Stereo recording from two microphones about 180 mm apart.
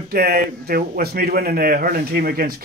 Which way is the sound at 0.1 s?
60° right (ahead or behind).